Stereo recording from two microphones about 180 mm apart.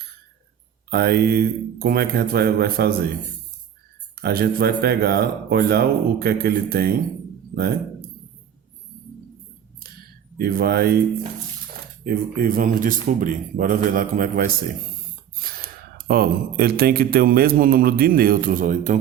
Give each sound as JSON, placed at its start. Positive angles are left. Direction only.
{"t": 0.9, "sound": "speech", "side_deg": -60}
{"t": 4.1, "sound": "speech", "side_deg": -60}
{"t": 10.3, "sound": "speech", "side_deg": -60}
{"t": 12.0, "sound": "speech", "side_deg": -55}